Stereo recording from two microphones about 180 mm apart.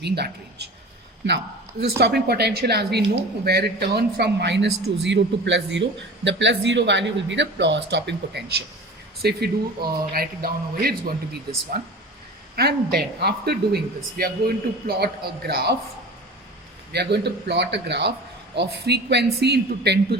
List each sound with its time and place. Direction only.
0.0 s speech: 65° right (ahead or behind)
2.0 s a man's voice: 65° right (ahead or behind)
9.2 s a man's voice: 60° right (ahead or behind)
16.9 s speech: 65° right (ahead or behind)